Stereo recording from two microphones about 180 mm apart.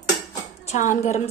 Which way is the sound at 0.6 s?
45° left (ahead or behind).